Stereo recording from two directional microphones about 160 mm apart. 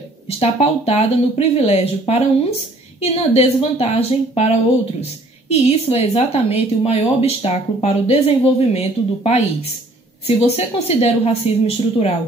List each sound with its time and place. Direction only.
0.4 s a woman's voice: 40° left (ahead or behind)